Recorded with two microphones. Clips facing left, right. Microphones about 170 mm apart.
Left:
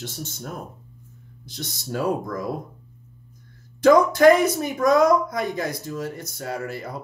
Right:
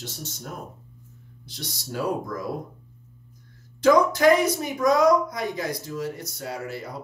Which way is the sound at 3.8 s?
50° left (ahead or behind).